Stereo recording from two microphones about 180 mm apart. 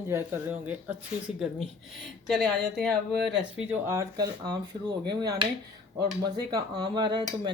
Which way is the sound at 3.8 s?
15° right (ahead or behind).